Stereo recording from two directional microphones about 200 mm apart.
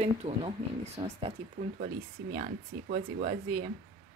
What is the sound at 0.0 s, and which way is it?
Speech, 30° right (ahead or behind).